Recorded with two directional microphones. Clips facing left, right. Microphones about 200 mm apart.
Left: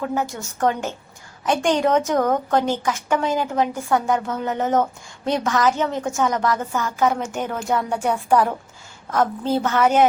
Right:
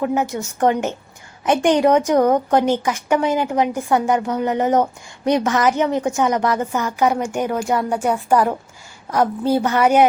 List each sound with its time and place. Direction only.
0.0 s a woman's voice: 15° right (ahead or behind)